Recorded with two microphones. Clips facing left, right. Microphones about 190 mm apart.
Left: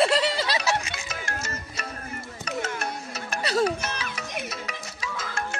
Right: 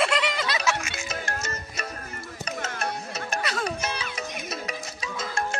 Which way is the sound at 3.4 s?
35° left (ahead or behind).